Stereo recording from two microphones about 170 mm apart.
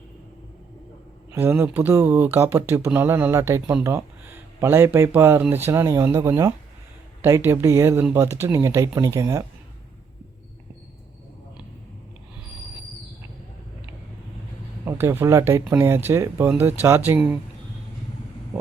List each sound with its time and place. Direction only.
1.3 s speech: 15° right (ahead or behind)
14.8 s speech: 15° right (ahead or behind)
18.5 s a sound: 5° right (ahead or behind)